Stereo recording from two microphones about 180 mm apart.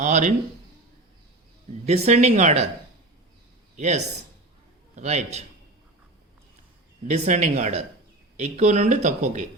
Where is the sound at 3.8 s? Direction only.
40° right (ahead or behind).